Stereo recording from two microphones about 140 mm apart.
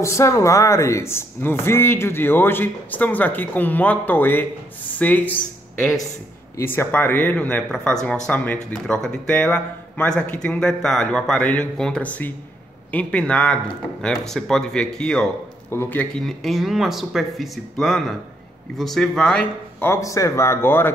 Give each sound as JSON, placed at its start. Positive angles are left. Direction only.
{"t": 0.0, "sound": "speech", "side_deg": 20}
{"t": 6.5, "sound": "speech", "side_deg": 20}